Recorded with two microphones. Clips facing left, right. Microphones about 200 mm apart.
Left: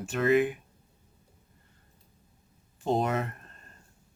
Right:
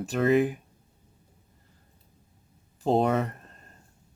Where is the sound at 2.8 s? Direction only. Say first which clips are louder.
Right 4 dB; 30° right (ahead or behind).